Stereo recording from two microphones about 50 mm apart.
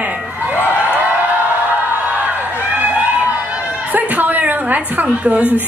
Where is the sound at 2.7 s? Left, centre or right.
Right.